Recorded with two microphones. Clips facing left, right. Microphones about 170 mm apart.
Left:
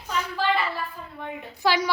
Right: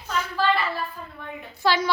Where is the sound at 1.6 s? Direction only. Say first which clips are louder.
Right 1 dB; 10° left (ahead or behind).